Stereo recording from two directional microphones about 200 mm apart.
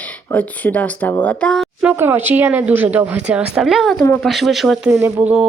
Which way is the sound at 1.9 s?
10° right (ahead or behind).